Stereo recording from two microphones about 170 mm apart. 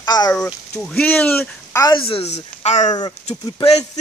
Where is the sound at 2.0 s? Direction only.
35° left (ahead or behind).